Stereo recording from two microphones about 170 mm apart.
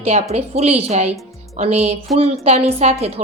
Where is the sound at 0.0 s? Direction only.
40° right (ahead or behind).